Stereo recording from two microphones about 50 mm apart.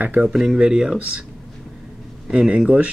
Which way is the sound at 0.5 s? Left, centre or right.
Centre.